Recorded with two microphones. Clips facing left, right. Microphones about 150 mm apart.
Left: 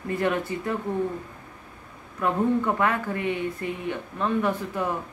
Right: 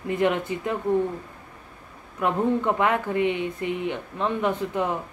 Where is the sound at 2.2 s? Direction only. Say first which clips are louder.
Even; 20° right (ahead or behind).